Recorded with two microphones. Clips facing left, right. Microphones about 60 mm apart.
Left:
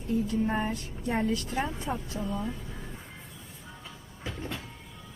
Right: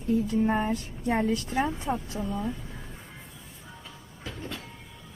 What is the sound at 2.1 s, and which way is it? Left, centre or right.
Speech, centre.